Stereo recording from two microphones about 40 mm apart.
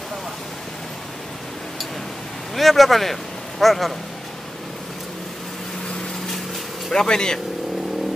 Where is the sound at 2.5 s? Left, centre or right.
Centre.